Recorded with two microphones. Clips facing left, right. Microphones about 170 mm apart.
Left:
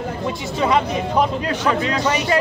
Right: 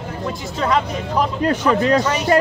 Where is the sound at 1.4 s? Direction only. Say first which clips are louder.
Right 3 dB; 50° right (ahead or behind).